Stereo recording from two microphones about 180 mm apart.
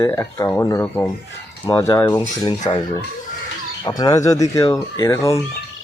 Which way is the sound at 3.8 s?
20° left (ahead or behind).